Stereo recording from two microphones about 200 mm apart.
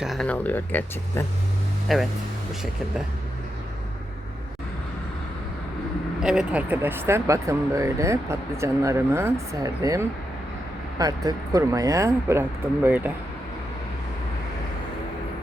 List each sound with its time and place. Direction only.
0.0 s speech: centre (ahead or behind)
6.2 s speech: 5° right (ahead or behind)